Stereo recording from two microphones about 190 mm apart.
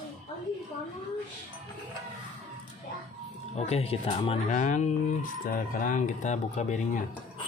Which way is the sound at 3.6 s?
35° left (ahead or behind).